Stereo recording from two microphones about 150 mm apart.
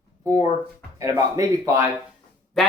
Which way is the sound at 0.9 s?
20° right (ahead or behind).